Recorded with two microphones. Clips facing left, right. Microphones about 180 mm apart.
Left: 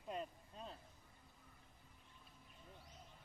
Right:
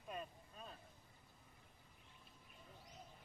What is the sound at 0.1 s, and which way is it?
Vehicle, 25° left (ahead or behind).